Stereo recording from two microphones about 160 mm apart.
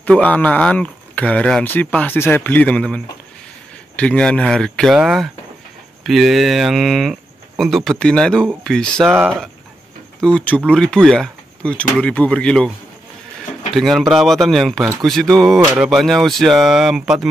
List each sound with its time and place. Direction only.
0.0 s speech: 10° left (ahead or behind)
10.2 s speech: 10° left (ahead or behind)
13.7 s speech: centre (ahead or behind)